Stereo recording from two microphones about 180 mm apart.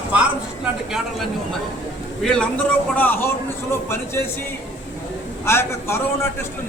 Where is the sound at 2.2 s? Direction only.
5° left (ahead or behind).